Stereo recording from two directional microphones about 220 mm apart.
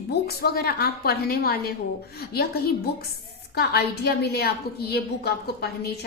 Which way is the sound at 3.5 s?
50° left (ahead or behind).